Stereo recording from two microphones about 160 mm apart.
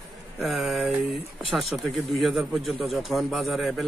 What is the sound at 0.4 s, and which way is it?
Speech, centre (ahead or behind).